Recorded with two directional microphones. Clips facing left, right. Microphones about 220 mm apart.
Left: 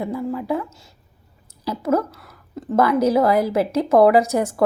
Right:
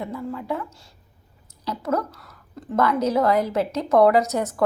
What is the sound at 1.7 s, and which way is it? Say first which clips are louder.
Speech: left 5 dB; 25° left (ahead or behind).